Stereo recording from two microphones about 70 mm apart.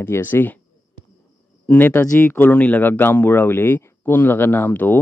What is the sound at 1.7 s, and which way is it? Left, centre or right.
Speech, left.